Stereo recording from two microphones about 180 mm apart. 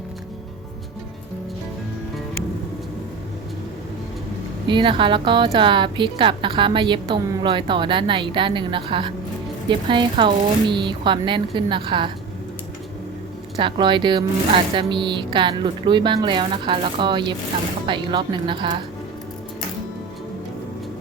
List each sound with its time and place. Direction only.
4.6 s a woman's voice: 25° right (ahead or behind)
13.6 s a woman's voice: 25° right (ahead or behind)